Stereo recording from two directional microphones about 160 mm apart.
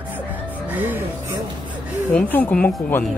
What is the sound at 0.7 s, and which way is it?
Music, 10° right (ahead or behind).